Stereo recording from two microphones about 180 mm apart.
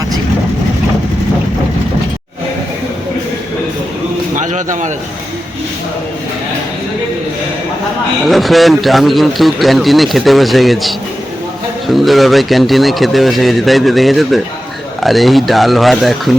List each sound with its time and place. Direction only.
4.4 s bird: 45° right (ahead or behind)
8.3 s a man's voice: centre (ahead or behind)
11.9 s a man's voice: centre (ahead or behind)